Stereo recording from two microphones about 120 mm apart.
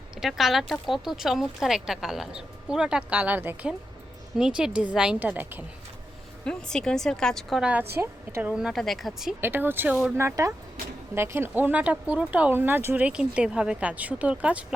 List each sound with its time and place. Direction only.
0.2 s speech: centre (ahead or behind)
6.4 s speech: 5° left (ahead or behind)
7.6 s speech: 15° right (ahead or behind)
9.4 s speech: 15° right (ahead or behind)